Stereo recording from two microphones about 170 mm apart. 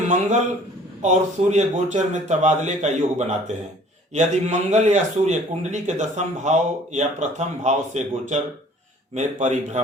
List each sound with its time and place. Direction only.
0.1 s a man's voice: 45° right (ahead or behind)